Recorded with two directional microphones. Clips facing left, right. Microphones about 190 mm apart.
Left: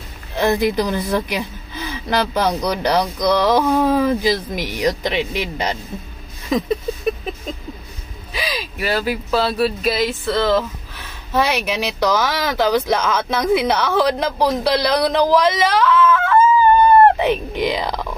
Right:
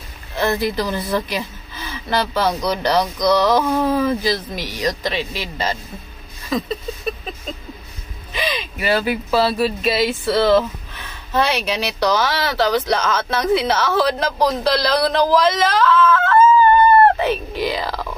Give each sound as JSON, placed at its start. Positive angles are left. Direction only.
{"t": 0.4, "sound": "speech", "side_deg": 15}
{"t": 6.5, "sound": "a sound", "side_deg": 15}
{"t": 8.3, "sound": "speech", "side_deg": 5}
{"t": 11.3, "sound": "speech", "side_deg": 10}